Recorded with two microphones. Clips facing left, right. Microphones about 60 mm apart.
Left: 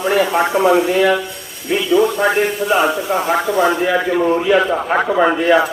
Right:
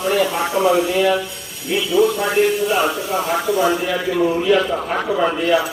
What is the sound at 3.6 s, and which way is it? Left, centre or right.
Speech, left.